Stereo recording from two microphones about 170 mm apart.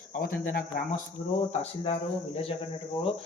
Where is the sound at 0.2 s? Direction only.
55° left (ahead or behind).